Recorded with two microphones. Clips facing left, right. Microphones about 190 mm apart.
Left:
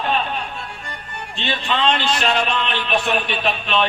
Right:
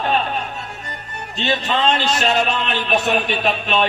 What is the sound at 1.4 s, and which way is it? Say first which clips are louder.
A man's voice: right 2 dB; 45° right (ahead or behind).